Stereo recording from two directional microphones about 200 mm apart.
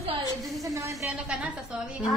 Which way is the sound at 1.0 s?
5° right (ahead or behind).